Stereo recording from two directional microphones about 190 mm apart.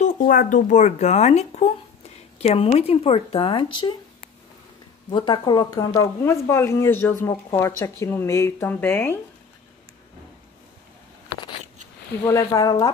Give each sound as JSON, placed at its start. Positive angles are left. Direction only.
{"t": 0.0, "sound": "speech", "side_deg": 45}
{"t": 12.2, "sound": "speech", "side_deg": 15}